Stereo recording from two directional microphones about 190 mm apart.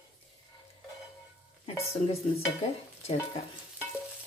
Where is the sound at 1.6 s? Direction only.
30° left (ahead or behind).